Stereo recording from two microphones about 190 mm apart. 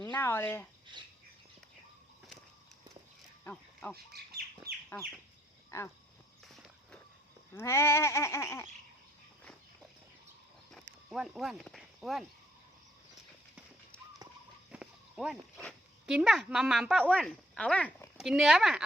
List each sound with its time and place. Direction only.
0.0 s speech: 15° left (ahead or behind)
0.9 s bird: 25° right (ahead or behind)
3.4 s a sound: 5° left (ahead or behind)
3.9 s speech: 55° right (ahead or behind)
5.7 s a sound: 15° left (ahead or behind)
6.4 s walk: centre (ahead or behind)
7.5 s a sound: 15° left (ahead or behind)
11.1 s speech: centre (ahead or behind)
14.7 s speech: 5° right (ahead or behind)